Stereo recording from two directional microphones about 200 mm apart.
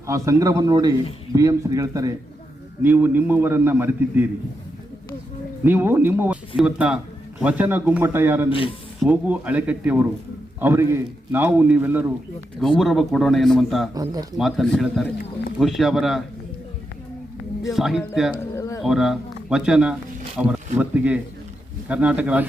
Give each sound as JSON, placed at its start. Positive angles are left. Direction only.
{"t": 0.1, "sound": "a man's voice", "side_deg": -15}
{"t": 5.6, "sound": "a man's voice", "side_deg": -10}
{"t": 8.4, "sound": "speech", "side_deg": 25}
{"t": 9.0, "sound": "a man's voice", "side_deg": -10}
{"t": 12.5, "sound": "a man's voice", "side_deg": 0}
{"t": 13.9, "sound": "speech", "side_deg": -20}
{"t": 14.3, "sound": "a man's voice", "side_deg": 0}
{"t": 17.7, "sound": "a man's voice", "side_deg": 0}
{"t": 18.5, "sound": "a sound", "side_deg": 15}
{"t": 18.8, "sound": "a man's voice", "side_deg": 0}